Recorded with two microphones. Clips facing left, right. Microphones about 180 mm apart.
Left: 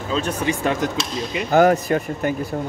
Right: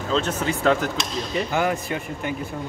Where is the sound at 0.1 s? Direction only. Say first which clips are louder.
Left 1 dB; 10° left (ahead or behind).